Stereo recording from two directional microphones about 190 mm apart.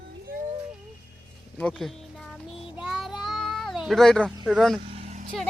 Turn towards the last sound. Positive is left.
turn(degrees=-40)  # may be behind; listen again after turning